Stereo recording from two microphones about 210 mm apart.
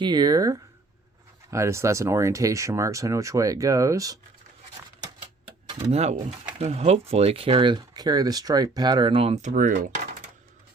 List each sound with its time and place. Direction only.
0.0 s speech: 20° right (ahead or behind); by 9.9 s 40° right (ahead or behind)